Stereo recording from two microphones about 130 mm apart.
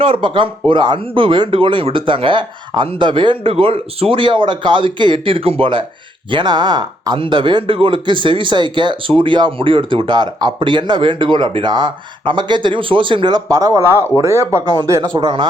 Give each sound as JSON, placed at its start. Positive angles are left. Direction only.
{"t": 0.0, "sound": "speech", "side_deg": -40}